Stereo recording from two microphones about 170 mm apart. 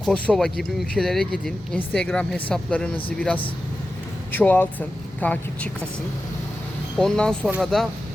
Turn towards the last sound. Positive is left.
turn(degrees=0)  # may be behind; listen again after turning